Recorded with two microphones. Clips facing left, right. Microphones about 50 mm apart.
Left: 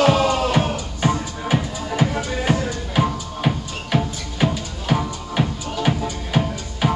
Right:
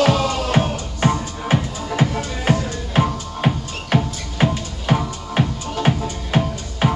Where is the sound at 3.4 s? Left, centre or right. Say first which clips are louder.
Right 2 dB; centre.